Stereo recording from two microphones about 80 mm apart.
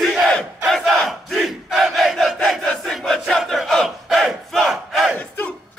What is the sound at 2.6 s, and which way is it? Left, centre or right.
Battle cry, centre.